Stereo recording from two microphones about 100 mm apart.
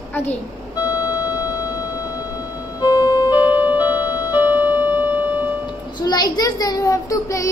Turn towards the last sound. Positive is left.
turn(degrees=35)  # may be behind; listen again after turning